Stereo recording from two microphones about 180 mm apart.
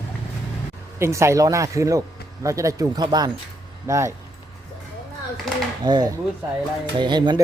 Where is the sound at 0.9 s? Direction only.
15° right (ahead or behind).